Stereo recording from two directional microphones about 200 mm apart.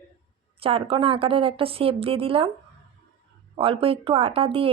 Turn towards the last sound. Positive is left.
turn(degrees=-25)  # may be behind; listen again after turning